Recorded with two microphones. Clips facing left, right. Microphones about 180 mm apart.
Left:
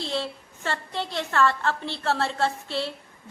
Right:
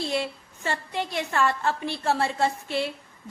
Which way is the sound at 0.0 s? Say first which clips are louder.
Right 2 dB; 10° right (ahead or behind).